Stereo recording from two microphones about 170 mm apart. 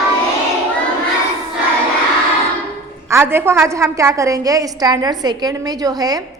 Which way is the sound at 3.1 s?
15° right (ahead or behind).